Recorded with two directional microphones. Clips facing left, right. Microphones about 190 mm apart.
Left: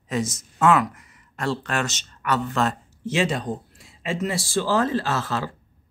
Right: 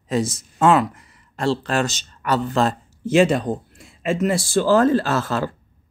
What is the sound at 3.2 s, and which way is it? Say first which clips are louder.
Speech: right 8 dB; 55° right (ahead or behind).